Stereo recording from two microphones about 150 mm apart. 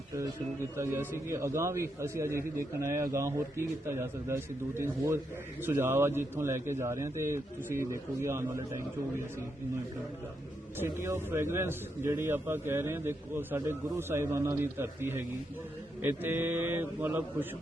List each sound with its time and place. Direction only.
0.1 s a man's voice: 20° right (ahead or behind)
10.8 s a man's voice: 15° right (ahead or behind)